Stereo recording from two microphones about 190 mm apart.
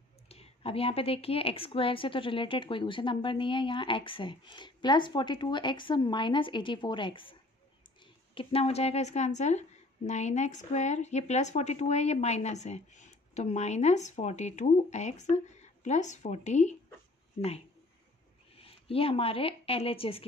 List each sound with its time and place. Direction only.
0.3 s a woman's voice: 30° left (ahead or behind)
18.6 s speech: 30° left (ahead or behind)